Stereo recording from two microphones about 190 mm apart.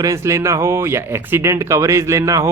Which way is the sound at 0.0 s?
15° right (ahead or behind).